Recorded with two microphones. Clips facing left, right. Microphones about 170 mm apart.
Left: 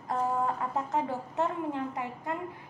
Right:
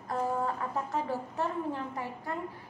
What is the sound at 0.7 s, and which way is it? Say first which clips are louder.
A woman's voice: left 2 dB; 20° left (ahead or behind).